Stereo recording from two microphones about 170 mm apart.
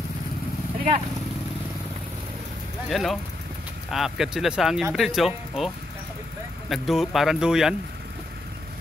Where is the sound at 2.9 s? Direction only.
Centre (ahead or behind).